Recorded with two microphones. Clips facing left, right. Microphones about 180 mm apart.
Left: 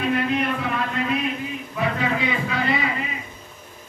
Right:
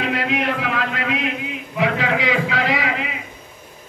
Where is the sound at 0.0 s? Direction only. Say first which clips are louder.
Even; 90° right.